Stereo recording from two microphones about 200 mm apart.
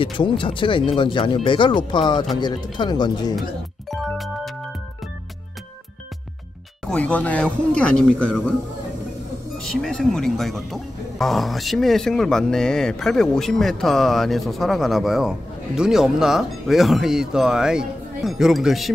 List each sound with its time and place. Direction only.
0.0 s speech: 25° left (ahead or behind)
4.0 s music: centre (ahead or behind)
6.9 s speech: 5° left (ahead or behind)
9.7 s speech: centre (ahead or behind)